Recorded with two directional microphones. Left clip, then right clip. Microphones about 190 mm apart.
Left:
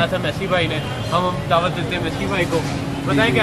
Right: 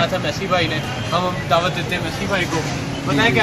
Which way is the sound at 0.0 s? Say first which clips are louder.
Even; centre (ahead or behind).